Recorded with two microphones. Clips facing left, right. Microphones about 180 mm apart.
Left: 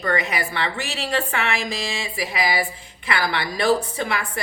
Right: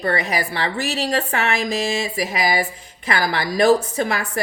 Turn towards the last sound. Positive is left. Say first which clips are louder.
# right 4 dB
turn(degrees=-40)  # may be behind; listen again after turning